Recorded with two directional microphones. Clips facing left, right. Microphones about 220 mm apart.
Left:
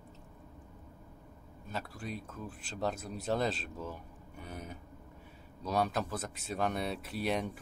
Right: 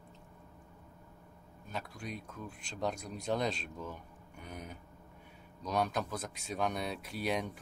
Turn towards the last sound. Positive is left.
turn(degrees=0)  # may be behind; listen again after turning